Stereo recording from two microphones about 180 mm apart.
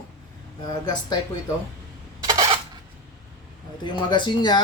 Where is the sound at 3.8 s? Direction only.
25° left (ahead or behind).